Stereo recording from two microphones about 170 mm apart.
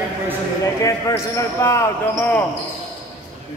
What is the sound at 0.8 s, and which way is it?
Speech, 20° left (ahead or behind).